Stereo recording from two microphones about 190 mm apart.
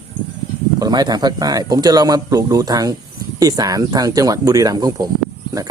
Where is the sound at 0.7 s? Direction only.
20° right (ahead or behind).